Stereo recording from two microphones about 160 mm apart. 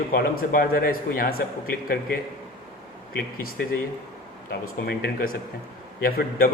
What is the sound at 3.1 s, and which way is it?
Speech, 75° left (ahead or behind).